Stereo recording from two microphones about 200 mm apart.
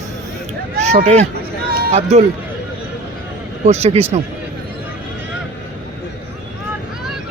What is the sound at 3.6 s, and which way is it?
Speech, 30° right (ahead or behind).